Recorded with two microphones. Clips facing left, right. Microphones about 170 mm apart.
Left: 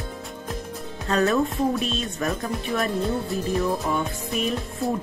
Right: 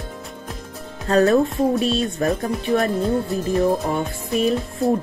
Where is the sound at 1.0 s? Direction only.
35° right (ahead or behind).